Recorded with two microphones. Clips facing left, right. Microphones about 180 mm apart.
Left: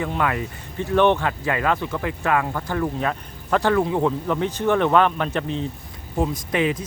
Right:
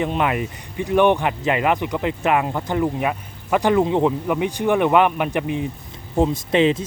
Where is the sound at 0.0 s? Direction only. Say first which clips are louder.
Right 3 dB; 20° right (ahead or behind).